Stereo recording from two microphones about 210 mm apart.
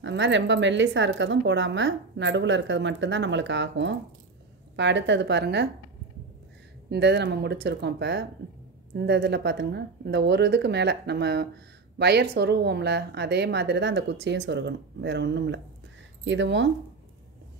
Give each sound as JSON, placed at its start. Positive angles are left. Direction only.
{"t": 0.0, "sound": "a woman's voice", "side_deg": -55}
{"t": 6.9, "sound": "a woman's voice", "side_deg": -55}